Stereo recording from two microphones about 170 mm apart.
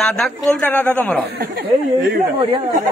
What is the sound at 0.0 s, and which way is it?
A woman's voice, 5° left (ahead or behind).